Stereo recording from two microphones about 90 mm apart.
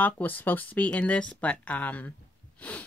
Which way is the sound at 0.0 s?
20° left (ahead or behind).